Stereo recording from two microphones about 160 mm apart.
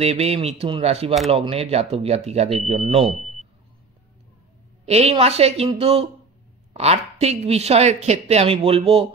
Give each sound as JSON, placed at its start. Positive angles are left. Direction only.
{"t": 0.0, "sound": "speech", "side_deg": -40}
{"t": 3.2, "sound": "vehicle", "side_deg": 0}
{"t": 4.8, "sound": "speech", "side_deg": -40}